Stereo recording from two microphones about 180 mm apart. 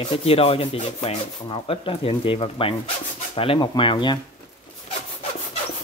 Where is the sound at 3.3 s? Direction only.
30° left (ahead or behind).